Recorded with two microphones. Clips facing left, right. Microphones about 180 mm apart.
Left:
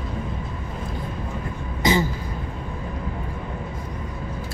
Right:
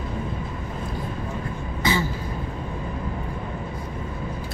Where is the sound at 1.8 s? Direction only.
15° left (ahead or behind).